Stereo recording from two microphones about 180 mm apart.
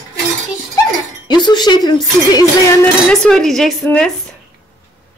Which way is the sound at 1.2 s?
25° left (ahead or behind).